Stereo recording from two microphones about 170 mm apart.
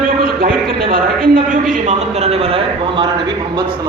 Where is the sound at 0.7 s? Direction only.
55° right (ahead or behind); by 3.9 s 25° right (ahead or behind).